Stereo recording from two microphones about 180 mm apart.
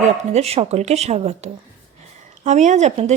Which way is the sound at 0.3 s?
35° right (ahead or behind).